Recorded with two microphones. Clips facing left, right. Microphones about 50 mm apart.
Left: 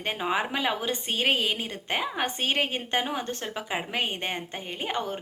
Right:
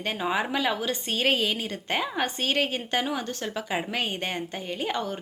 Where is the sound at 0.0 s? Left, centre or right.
Left.